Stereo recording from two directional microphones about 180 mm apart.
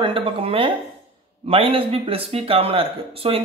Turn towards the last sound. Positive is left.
turn(degrees=-30)  # may be behind; listen again after turning